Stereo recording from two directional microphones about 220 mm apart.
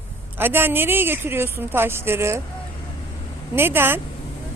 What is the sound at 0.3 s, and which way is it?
A woman's voice, 10° right (ahead or behind).